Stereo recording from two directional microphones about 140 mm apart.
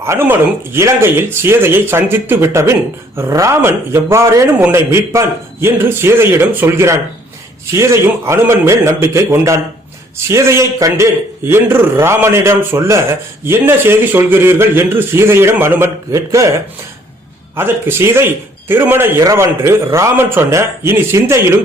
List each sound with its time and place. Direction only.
0.0 s a man's voice: 15° right (ahead or behind)
17.6 s a man's voice: 15° right (ahead or behind)